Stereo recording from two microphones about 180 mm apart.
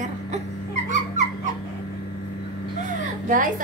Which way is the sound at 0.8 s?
45° right (ahead or behind).